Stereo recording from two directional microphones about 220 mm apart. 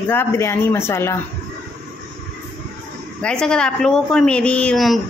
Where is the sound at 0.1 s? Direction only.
10° left (ahead or behind).